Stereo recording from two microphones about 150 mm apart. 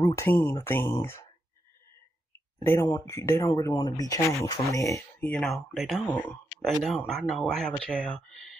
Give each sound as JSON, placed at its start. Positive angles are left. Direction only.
{"t": 0.0, "sound": "speech", "side_deg": 20}
{"t": 2.6, "sound": "speech", "side_deg": 15}
{"t": 5.3, "sound": "speech", "side_deg": 5}